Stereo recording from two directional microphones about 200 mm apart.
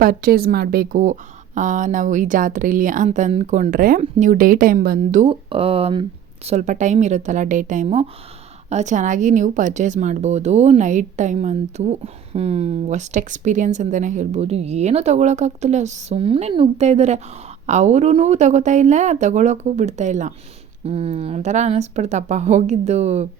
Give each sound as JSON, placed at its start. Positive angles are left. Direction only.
{"t": 0.0, "sound": "speech", "side_deg": -45}
{"t": 5.2, "sound": "speech", "side_deg": -25}